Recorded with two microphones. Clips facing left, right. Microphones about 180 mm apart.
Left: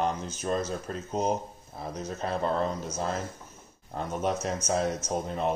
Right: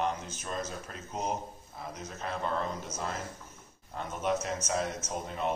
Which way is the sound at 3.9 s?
35° left (ahead or behind).